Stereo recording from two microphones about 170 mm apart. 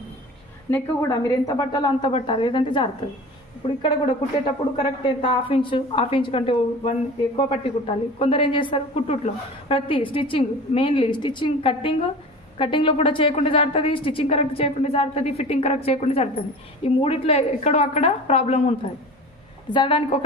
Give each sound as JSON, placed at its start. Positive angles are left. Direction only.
{"t": 0.7, "sound": "a woman's voice", "side_deg": 15}